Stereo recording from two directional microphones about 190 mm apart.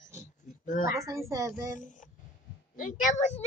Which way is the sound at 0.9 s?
15° right (ahead or behind).